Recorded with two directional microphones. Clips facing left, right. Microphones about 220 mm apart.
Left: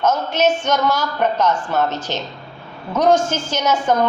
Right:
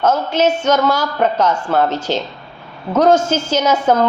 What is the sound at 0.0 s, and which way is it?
Speech, 10° right (ahead or behind).